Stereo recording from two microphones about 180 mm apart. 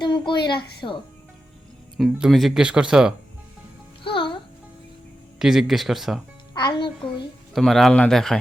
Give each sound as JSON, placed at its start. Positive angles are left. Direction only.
{"t": 0.0, "sound": "a woman's voice", "side_deg": 25}
{"t": 2.0, "sound": "speech", "side_deg": -5}
{"t": 4.0, "sound": "music", "side_deg": 25}
{"t": 5.4, "sound": "speech", "side_deg": 0}
{"t": 6.5, "sound": "a child's voice", "side_deg": 25}
{"t": 7.5, "sound": "speech", "side_deg": 0}